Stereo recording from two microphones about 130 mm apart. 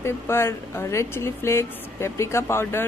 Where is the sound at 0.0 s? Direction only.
20° left (ahead or behind).